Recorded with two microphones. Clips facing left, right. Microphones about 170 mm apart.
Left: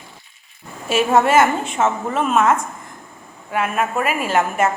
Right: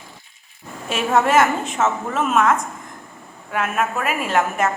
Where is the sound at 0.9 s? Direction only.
Centre (ahead or behind).